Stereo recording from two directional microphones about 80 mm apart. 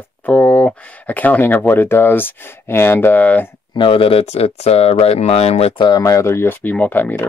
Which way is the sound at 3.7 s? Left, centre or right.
Left.